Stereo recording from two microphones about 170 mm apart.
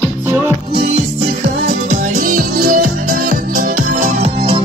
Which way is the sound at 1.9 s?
50° right (ahead or behind).